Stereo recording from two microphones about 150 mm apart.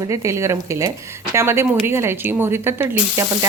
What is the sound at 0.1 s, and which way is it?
Speech, 20° right (ahead or behind).